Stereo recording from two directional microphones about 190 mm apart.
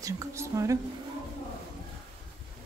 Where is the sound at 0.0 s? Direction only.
15° right (ahead or behind).